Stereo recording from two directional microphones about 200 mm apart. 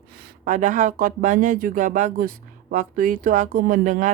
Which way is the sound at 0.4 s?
40° right (ahead or behind).